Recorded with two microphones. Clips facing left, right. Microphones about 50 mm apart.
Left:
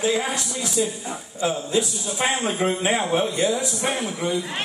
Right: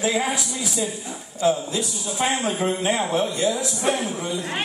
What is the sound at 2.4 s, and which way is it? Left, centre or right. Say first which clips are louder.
A man's voice: even; left.